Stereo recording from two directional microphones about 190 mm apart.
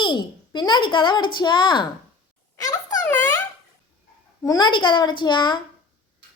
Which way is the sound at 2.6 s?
20° left (ahead or behind).